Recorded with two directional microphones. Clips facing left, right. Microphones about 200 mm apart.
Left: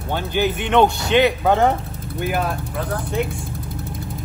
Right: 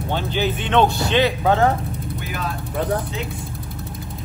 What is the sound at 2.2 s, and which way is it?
Speech, 55° left (ahead or behind).